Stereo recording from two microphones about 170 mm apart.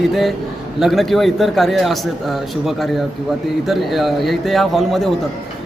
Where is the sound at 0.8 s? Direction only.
Centre (ahead or behind).